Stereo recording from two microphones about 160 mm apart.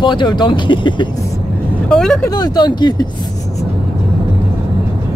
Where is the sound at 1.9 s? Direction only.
5° left (ahead or behind).